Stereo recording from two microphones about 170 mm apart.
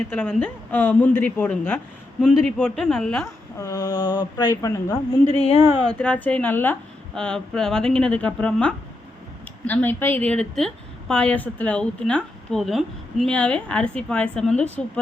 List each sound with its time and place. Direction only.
0.1 s a woman's voice: 10° left (ahead or behind)
3.6 s speech: 20° left (ahead or behind)
5.2 s a woman's voice: 35° left (ahead or behind)
5.9 s a woman's voice: 5° left (ahead or behind)